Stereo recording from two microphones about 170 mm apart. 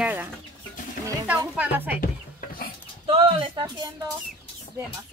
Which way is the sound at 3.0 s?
30° right (ahead or behind).